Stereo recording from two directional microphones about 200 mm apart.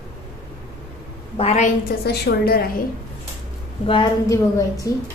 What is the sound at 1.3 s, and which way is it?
Speech, 30° left (ahead or behind).